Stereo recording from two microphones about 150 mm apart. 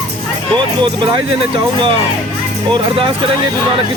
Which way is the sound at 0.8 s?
30° right (ahead or behind).